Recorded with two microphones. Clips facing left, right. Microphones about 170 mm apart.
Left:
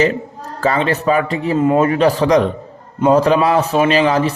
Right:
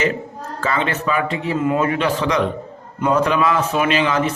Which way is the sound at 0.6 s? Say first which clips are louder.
Left 5 dB; 35° left (ahead or behind).